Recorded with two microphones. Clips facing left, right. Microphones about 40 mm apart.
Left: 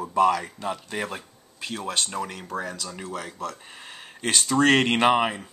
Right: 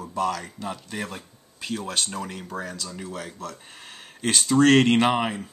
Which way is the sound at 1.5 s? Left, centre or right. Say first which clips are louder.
Even; centre.